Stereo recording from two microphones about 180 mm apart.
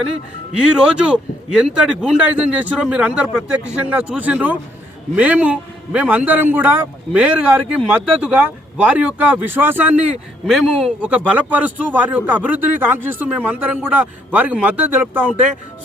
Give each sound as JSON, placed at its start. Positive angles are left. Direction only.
{"t": 0.6, "sound": "a man's voice", "side_deg": -5}